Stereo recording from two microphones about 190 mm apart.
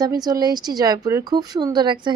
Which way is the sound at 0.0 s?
20° right (ahead or behind).